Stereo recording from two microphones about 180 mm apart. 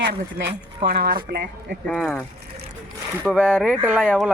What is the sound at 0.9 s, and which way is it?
Speech, 55° right (ahead or behind).